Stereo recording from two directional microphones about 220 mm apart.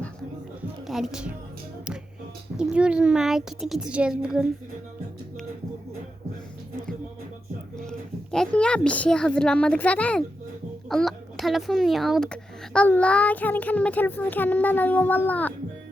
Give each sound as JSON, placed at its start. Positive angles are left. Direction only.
{"t": 0.9, "sound": "a woman's voice", "side_deg": 0}
{"t": 2.6, "sound": "a woman's voice", "side_deg": -5}
{"t": 7.8, "sound": "a woman's voice", "side_deg": 0}